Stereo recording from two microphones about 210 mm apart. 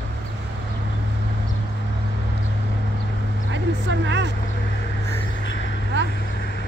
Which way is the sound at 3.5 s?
60° right (ahead or behind).